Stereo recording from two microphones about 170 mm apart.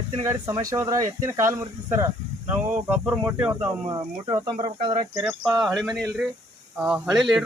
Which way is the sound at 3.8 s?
25° right (ahead or behind).